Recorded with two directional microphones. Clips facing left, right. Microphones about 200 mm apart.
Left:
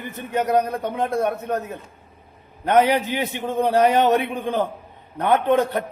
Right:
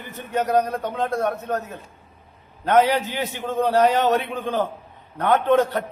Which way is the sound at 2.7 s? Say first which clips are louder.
Left 1 dB; 15° left (ahead or behind).